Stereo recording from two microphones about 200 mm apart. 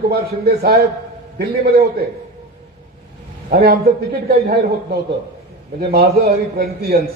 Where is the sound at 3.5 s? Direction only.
50° right (ahead or behind).